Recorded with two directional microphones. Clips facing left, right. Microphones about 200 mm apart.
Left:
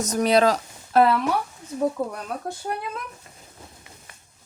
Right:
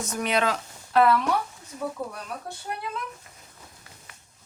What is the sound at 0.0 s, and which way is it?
Speech, 40° left (ahead or behind).